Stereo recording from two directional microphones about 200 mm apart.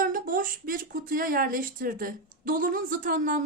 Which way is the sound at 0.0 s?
45° right (ahead or behind).